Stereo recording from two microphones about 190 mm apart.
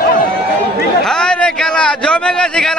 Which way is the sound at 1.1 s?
5° left (ahead or behind).